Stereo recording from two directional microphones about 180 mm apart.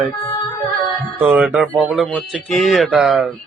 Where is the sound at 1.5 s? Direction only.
5° left (ahead or behind).